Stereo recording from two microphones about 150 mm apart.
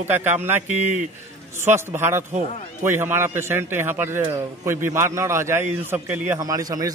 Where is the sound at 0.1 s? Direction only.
15° right (ahead or behind).